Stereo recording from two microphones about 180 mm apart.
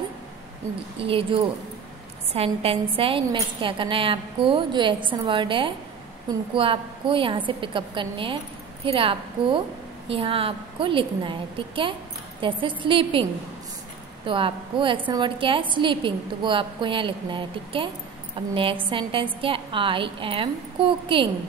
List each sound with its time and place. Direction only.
0.9 s a woman's voice: 30° right (ahead or behind)